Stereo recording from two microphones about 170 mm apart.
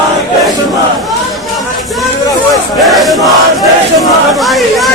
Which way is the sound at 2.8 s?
Centre (ahead or behind).